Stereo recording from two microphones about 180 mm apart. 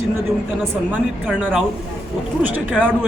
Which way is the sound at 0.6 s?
10° right (ahead or behind).